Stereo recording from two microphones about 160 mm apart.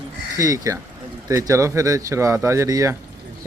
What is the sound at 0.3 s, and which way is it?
A man's voice, 20° right (ahead or behind).